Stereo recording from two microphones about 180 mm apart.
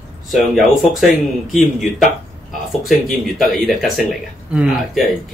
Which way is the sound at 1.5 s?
45° left (ahead or behind).